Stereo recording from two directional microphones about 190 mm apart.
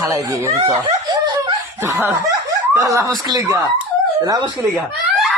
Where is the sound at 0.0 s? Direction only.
15° right (ahead or behind).